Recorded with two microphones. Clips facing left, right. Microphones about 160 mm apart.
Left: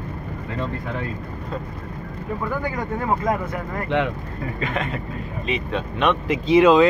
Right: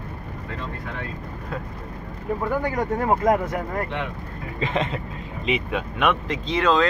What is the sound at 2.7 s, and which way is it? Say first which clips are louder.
Speech: right 2 dB; 45° right (ahead or behind).